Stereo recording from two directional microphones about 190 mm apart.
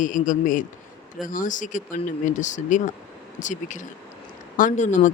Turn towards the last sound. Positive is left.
turn(degrees=40)  # may be behind; listen again after turning